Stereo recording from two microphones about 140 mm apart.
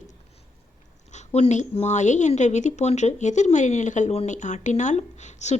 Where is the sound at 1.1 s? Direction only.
55° left (ahead or behind).